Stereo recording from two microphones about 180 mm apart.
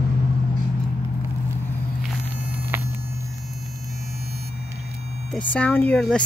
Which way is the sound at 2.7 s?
10° right (ahead or behind).